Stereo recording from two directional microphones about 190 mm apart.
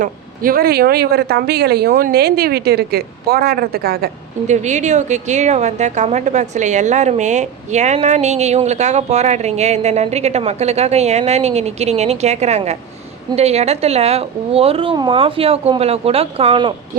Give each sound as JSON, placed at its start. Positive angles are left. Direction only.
{"t": 0.0, "sound": "speech", "side_deg": -50}
{"t": 4.4, "sound": "a woman's voice", "side_deg": -40}